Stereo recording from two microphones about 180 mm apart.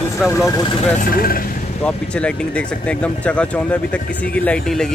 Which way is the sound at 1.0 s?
55° left (ahead or behind).